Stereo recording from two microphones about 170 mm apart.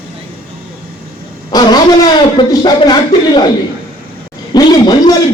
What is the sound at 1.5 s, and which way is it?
Vehicle, 25° left (ahead or behind).